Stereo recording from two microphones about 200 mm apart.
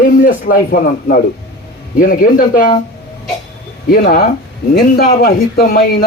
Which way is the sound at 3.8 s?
50° left (ahead or behind).